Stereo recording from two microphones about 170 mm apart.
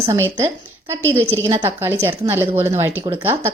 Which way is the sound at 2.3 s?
15° right (ahead or behind).